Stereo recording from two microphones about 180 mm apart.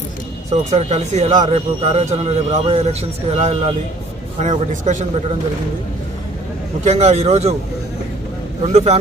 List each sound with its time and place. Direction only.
0.7 s a man's voice: 40° right (ahead or behind)
6.8 s speech: 35° right (ahead or behind)
8.6 s speech: 35° right (ahead or behind)